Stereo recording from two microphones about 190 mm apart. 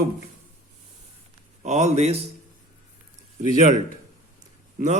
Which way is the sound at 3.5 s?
40° right (ahead or behind).